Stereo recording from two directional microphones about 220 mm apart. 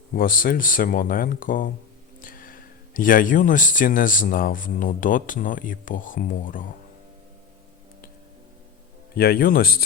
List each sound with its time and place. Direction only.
0.1 s speech: 40° left (ahead or behind)
9.1 s speech: 45° left (ahead or behind)